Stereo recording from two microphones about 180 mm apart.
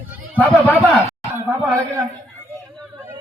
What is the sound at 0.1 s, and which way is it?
Chatter, 10° right (ahead or behind).